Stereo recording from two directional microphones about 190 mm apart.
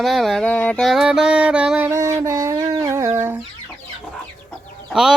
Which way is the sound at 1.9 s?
20° right (ahead or behind).